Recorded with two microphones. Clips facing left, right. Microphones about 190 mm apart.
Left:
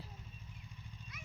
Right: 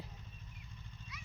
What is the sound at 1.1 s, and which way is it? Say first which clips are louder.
Horse: right 1 dB; 50° left (ahead or behind).